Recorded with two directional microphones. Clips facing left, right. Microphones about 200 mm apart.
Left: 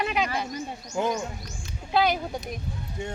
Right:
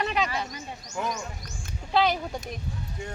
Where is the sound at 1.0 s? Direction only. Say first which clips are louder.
Left 5 dB; 30° left (ahead or behind).